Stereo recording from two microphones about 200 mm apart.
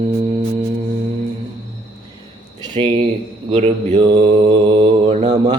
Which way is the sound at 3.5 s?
30° right (ahead or behind).